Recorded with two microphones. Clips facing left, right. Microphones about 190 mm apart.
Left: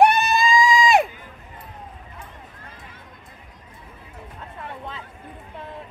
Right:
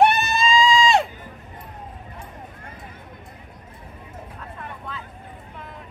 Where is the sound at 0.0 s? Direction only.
15° left (ahead or behind).